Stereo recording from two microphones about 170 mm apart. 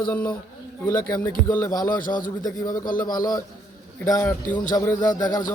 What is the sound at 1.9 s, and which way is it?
Speech, 55° left (ahead or behind).